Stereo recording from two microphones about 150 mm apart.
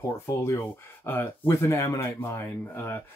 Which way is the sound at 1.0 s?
15° left (ahead or behind).